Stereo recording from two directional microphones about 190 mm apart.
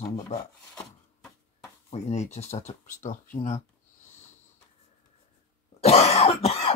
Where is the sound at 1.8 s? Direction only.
35° left (ahead or behind).